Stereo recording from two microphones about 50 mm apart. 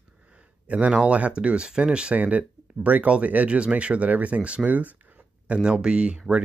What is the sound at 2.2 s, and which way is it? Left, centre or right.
Speech, right.